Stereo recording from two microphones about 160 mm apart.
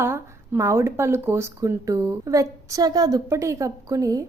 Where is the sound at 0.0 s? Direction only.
15° right (ahead or behind).